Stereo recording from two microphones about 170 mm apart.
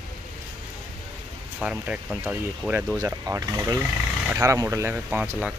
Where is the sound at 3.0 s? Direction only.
15° right (ahead or behind).